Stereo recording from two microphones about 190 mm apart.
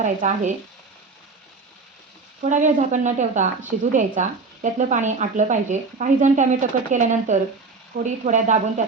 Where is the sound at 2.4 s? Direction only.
40° right (ahead or behind).